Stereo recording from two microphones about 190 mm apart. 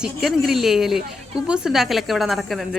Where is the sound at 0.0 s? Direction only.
Centre (ahead or behind).